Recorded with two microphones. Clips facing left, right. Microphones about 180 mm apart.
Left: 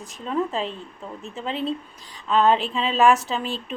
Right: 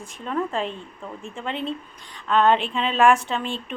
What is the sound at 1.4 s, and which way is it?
Speech, 35° left (ahead or behind).